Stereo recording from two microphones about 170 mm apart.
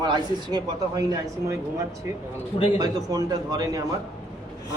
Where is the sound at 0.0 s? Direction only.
25° right (ahead or behind).